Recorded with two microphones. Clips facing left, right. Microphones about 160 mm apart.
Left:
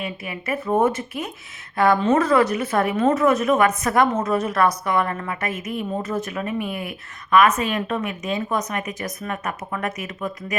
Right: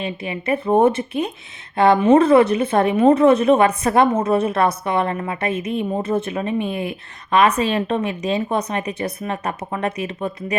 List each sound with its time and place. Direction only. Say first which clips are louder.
0.0 s a woman's voice: right 4 dB; 30° right (ahead or behind)